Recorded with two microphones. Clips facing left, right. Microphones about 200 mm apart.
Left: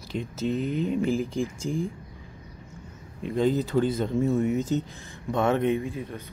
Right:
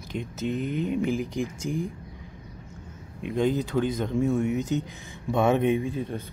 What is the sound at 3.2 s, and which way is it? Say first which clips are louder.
Speech: left 1 dB; centre (ahead or behind).